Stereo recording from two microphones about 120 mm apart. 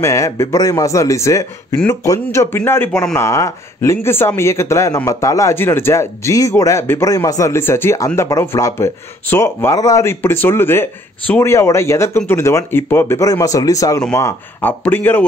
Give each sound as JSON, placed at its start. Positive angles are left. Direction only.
{"t": 0.0, "sound": "speech", "side_deg": 25}